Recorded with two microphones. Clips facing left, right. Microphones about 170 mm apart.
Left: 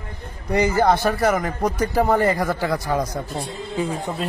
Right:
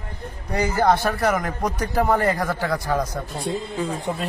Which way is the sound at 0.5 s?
10° left (ahead or behind).